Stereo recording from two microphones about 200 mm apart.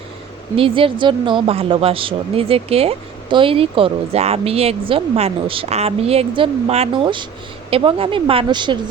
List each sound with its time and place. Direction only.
0.5 s speech: 25° right (ahead or behind)